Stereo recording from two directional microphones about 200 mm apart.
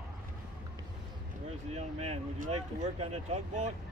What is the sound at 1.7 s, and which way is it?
Speech, 30° right (ahead or behind).